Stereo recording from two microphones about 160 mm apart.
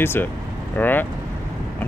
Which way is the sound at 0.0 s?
15° left (ahead or behind).